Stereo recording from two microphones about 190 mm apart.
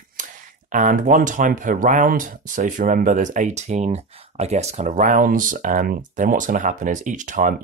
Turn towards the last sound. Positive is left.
turn(degrees=-40)  # may be behind; listen again after turning